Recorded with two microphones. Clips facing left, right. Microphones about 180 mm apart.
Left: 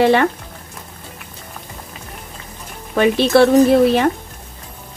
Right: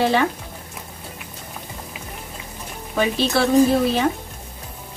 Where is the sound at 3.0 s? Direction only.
60° left (ahead or behind).